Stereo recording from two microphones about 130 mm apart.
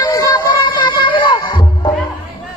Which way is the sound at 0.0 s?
30° left (ahead or behind).